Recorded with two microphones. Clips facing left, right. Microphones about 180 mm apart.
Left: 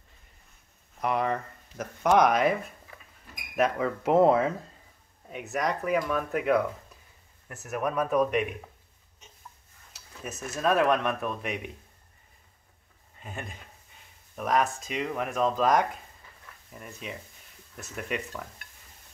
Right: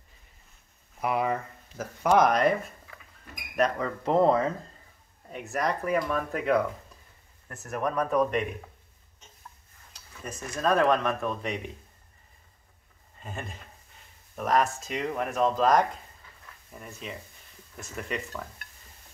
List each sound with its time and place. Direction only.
0.9 s speech: 5° right (ahead or behind)
9.9 s speech: 5° left (ahead or behind)
13.2 s speech: centre (ahead or behind)